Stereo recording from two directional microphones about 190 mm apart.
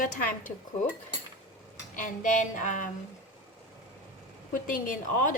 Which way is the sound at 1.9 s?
45° left (ahead or behind).